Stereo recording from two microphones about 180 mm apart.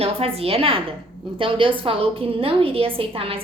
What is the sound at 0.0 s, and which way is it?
A woman's voice, 35° right (ahead or behind).